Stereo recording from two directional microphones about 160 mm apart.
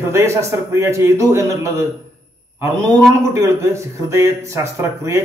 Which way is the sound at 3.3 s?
15° right (ahead or behind).